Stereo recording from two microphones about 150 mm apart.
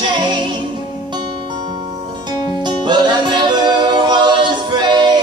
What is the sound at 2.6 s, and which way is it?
Music, 30° right (ahead or behind).